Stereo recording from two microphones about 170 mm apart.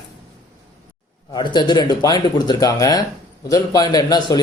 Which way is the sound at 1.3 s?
25° left (ahead or behind).